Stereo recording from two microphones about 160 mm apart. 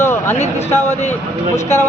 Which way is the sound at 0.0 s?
15° left (ahead or behind).